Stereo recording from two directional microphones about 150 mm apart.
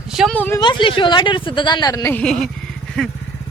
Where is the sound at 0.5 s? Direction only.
30° left (ahead or behind).